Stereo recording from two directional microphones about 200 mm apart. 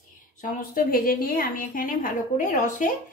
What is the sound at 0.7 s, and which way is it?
A woman's voice, 45° left (ahead or behind).